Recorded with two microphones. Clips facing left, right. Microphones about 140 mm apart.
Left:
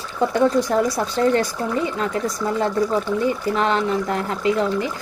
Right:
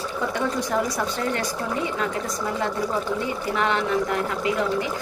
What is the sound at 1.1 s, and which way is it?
Speech, 30° left (ahead or behind).